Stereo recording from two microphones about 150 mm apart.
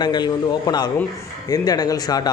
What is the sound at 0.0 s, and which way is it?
Speech, 30° left (ahead or behind).